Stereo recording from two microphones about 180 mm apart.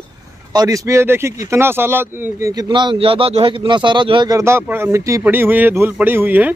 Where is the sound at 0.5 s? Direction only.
20° right (ahead or behind).